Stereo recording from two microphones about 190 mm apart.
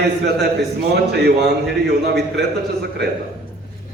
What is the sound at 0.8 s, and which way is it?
Speech, 60° right (ahead or behind).